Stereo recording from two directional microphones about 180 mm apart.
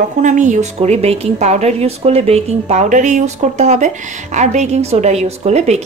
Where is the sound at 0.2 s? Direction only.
45° right (ahead or behind).